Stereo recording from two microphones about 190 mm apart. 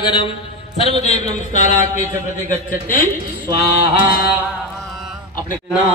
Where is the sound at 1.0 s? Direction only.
35° left (ahead or behind).